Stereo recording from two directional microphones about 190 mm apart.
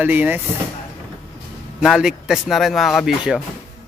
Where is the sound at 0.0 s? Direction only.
10° right (ahead or behind).